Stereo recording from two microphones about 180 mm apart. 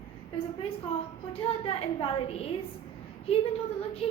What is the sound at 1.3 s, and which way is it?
A woman's voice, 30° left (ahead or behind).